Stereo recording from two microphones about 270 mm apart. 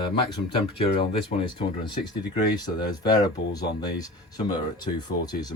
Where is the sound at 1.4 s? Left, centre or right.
Centre.